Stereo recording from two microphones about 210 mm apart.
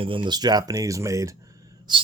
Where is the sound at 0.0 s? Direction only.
25° right (ahead or behind).